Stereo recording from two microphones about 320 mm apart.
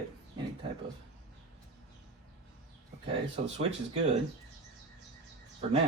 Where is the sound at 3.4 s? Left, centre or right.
Right.